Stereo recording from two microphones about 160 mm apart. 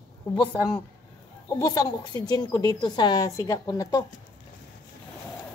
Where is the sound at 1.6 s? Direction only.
25° left (ahead or behind).